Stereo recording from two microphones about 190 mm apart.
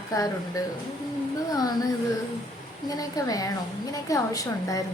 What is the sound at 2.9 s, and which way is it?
A woman's voice, 20° left (ahead or behind).